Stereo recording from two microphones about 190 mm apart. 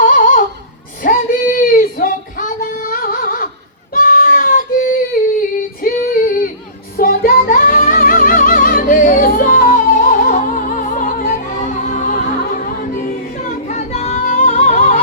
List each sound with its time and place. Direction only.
0.2 s a sound: 40° left (ahead or behind)
1.0 s child singing: 45° left (ahead or behind)
5.8 s female singing: 50° left (ahead or behind)
6.9 s music: 50° left (ahead or behind)
13.7 s child singing: 35° left (ahead or behind)
14.3 s music: 50° left (ahead or behind)